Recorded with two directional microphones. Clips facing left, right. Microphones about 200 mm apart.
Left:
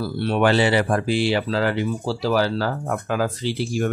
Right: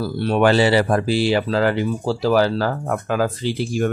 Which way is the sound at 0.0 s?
40° right (ahead or behind).